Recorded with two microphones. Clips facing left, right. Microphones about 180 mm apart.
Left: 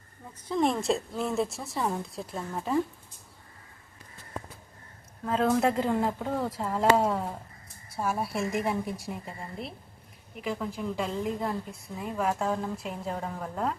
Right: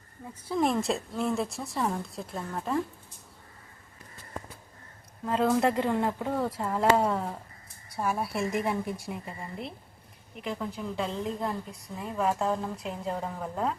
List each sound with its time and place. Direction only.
0.3 s speech: 5° right (ahead or behind)
5.2 s speech: centre (ahead or behind)